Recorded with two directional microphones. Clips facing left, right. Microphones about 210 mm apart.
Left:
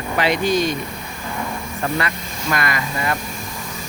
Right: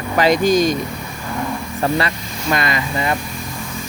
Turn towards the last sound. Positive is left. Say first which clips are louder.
# right 3 dB
turn(degrees=-20)  # may be behind; listen again after turning